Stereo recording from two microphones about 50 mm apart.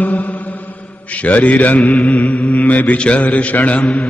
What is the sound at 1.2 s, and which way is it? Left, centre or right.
Mantra, left.